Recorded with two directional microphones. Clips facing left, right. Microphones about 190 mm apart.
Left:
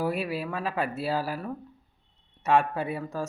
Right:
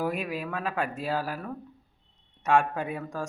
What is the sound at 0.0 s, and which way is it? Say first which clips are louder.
Speech: left 1 dB; 5° left (ahead or behind).